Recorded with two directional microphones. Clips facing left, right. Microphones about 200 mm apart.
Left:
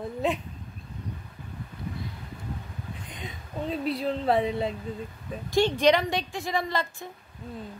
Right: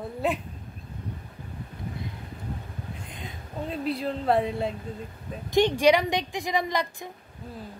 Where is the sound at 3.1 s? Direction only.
Centre (ahead or behind).